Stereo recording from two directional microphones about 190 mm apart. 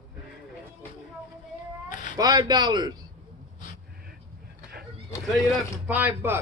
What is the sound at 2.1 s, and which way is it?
Speech, 20° right (ahead or behind).